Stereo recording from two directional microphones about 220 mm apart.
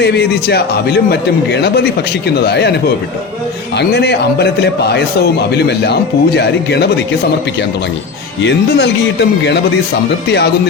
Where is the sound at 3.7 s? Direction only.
50° left (ahead or behind).